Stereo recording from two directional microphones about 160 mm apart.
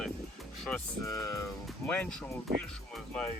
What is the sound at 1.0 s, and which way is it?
Speech, 20° left (ahead or behind).